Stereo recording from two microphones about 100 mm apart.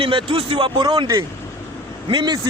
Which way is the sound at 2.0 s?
50° right (ahead or behind).